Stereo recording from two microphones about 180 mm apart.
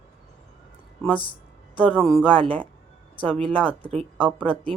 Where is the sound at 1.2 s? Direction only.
30° left (ahead or behind).